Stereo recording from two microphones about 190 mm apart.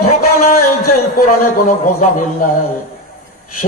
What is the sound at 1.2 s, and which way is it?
A man's voice, 45° left (ahead or behind).